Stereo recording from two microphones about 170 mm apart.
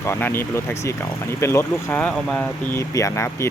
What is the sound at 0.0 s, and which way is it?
Speech, 15° left (ahead or behind).